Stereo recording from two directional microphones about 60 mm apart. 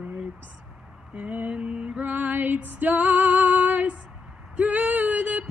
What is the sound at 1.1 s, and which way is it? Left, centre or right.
Female singing, right.